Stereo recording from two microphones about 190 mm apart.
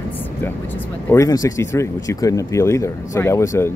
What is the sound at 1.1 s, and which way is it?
Speech, 15° left (ahead or behind).